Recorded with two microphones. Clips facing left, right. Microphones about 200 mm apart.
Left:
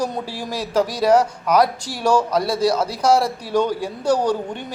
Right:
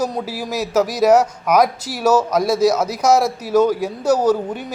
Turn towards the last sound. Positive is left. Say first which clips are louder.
# right 3 dB
turn(degrees=-5)  # may be behind; listen again after turning